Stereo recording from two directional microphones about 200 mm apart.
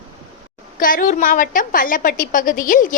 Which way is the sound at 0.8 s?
45° left (ahead or behind).